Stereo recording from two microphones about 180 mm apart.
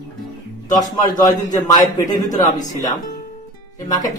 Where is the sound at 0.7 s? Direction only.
20° left (ahead or behind).